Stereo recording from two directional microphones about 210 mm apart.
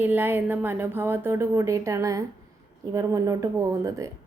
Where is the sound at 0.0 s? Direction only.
10° right (ahead or behind).